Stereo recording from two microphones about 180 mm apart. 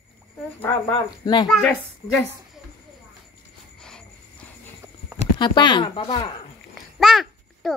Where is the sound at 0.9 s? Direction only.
25° left (ahead or behind).